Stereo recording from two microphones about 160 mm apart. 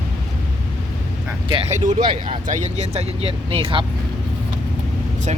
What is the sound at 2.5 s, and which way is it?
Speech, 50° right (ahead or behind).